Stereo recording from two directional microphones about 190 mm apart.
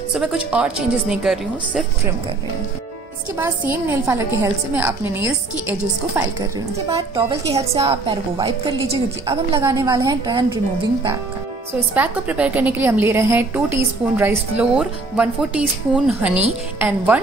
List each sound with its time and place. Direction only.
0.1 s a woman's voice: 5° right (ahead or behind)
3.3 s a woman's voice: 10° right (ahead or behind)
7.0 s a woman's voice: 25° right (ahead or behind)
9.6 s a woman's voice: 15° right (ahead or behind)
11.9 s a woman's voice: 10° right (ahead or behind)